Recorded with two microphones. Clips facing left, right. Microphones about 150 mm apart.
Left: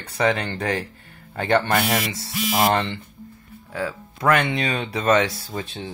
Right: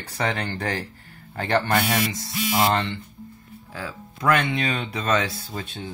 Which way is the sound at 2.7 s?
30° left (ahead or behind).